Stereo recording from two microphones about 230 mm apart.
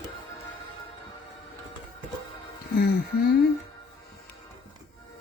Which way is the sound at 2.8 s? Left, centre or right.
Left.